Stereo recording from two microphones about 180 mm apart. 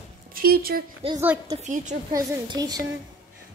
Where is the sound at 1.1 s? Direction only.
10° right (ahead or behind).